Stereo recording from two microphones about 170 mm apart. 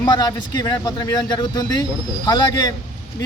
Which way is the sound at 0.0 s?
25° left (ahead or behind).